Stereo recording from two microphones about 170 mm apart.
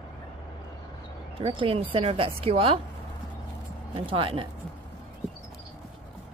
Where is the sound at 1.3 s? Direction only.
30° right (ahead or behind).